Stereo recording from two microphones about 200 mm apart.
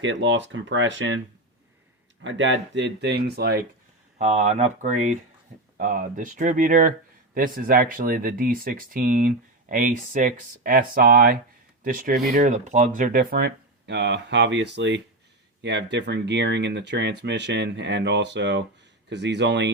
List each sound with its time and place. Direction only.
0.0 s speech: 65° right (ahead or behind)
2.2 s speech: 65° right (ahead or behind)
4.2 s speech: 35° right (ahead or behind); by 19.7 s 60° right (ahead or behind)